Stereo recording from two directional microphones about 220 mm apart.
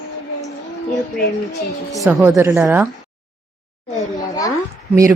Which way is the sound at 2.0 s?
10° right (ahead or behind).